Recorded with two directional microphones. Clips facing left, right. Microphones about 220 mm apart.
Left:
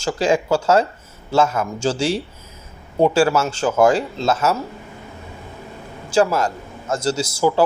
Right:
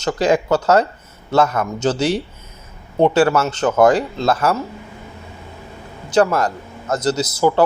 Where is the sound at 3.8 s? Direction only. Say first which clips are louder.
Right 2 dB; 25° left (ahead or behind).